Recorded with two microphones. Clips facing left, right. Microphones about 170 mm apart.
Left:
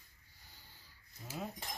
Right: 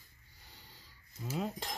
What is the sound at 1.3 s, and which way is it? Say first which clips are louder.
Speech: right 6 dB; 90° right.